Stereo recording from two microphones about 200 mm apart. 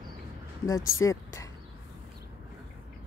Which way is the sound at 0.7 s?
15° left (ahead or behind).